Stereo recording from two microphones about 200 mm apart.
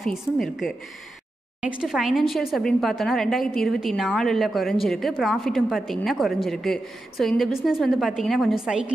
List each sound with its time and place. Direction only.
0.0 s speech: centre (ahead or behind)